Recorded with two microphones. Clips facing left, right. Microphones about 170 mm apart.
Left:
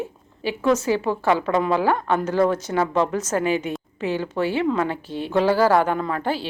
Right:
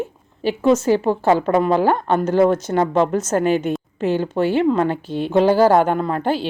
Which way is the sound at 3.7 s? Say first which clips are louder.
Right 5 dB; 5° left (ahead or behind).